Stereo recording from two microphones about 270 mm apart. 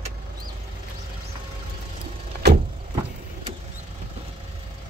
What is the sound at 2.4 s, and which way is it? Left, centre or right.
Vehicle, right.